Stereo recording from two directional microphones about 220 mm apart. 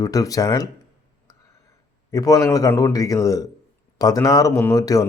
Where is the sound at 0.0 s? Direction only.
15° left (ahead or behind).